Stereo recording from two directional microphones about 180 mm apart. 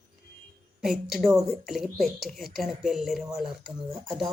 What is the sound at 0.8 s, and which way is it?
A woman's voice, centre (ahead or behind).